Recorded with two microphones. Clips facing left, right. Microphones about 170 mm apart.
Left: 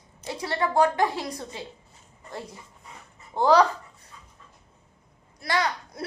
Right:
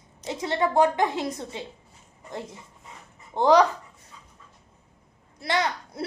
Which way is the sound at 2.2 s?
20° right (ahead or behind).